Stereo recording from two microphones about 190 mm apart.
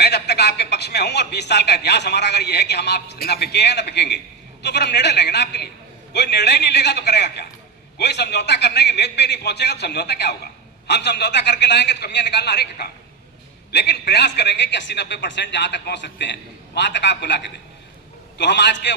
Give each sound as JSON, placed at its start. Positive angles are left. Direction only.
{"t": 0.0, "sound": "a man's voice", "side_deg": 60}